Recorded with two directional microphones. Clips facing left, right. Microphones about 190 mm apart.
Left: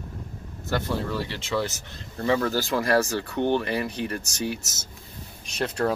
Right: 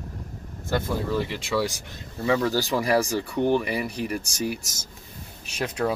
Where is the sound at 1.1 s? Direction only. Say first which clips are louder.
Right 2 dB; 10° right (ahead or behind).